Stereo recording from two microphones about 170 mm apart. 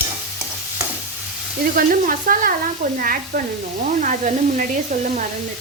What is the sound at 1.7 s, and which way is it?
Speech, 55° right (ahead or behind).